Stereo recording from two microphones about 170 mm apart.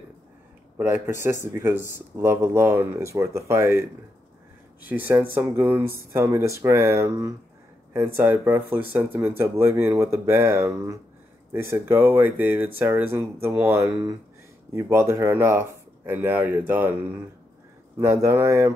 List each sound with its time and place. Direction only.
0.7 s speech: 10° right (ahead or behind)